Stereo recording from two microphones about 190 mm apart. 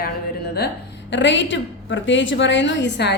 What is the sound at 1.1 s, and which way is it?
A woman's voice, 70° left (ahead or behind).